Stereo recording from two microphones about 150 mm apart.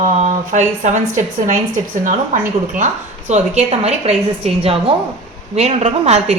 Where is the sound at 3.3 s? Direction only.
50° right (ahead or behind).